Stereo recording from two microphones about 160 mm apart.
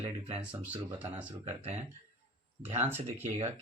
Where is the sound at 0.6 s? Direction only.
10° right (ahead or behind).